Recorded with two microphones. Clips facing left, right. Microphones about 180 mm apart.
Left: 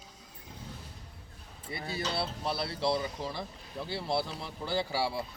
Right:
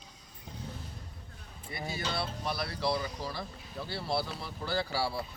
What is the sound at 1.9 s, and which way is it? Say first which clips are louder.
Speech: left 2 dB; 30° left (ahead or behind).